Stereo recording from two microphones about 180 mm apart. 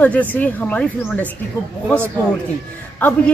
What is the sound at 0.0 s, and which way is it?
Speech, 10° left (ahead or behind).